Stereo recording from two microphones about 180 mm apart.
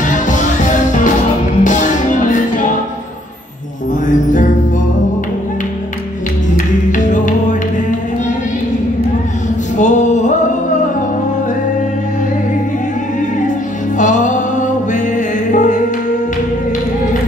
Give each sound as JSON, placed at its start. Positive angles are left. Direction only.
{"t": 1.6, "sound": "music", "side_deg": 45}
{"t": 4.1, "sound": "music", "side_deg": 45}
{"t": 6.9, "sound": "music", "side_deg": 45}
{"t": 9.8, "sound": "music", "side_deg": 40}
{"t": 13.9, "sound": "music", "side_deg": 45}